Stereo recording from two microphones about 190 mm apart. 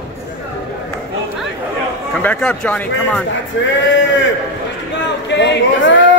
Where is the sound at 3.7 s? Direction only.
75° left (ahead or behind).